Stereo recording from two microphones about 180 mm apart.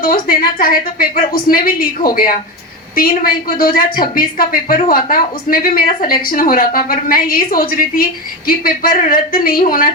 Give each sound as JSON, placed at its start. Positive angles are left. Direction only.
{"t": 0.0, "sound": "a woman's voice", "side_deg": 55}